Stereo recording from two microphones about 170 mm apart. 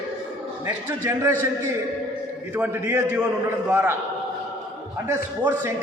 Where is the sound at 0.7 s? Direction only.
15° right (ahead or behind).